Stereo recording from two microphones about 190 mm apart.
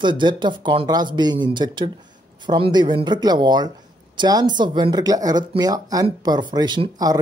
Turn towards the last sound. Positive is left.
turn(degrees=-20)  # may be behind; listen again after turning